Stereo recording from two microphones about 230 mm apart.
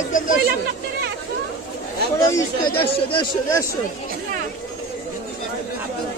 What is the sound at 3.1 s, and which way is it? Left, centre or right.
Speech, centre.